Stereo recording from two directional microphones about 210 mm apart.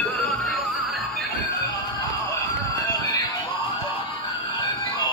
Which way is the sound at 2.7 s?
15° left (ahead or behind).